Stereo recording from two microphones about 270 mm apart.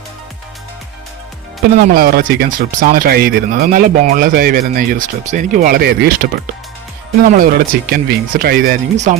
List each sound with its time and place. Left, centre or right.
1.8 s speech: right
7.3 s speech: right